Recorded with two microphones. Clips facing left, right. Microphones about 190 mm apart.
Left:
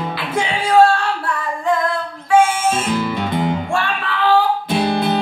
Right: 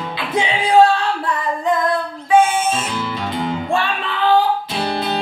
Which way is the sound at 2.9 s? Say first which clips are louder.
Left 4 dB; 55° left (ahead or behind).